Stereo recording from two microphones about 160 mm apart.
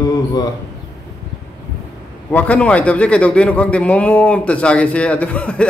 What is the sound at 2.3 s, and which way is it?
A man's voice, 10° left (ahead or behind).